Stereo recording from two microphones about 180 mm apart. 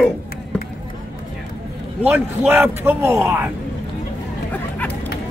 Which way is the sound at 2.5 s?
10° right (ahead or behind).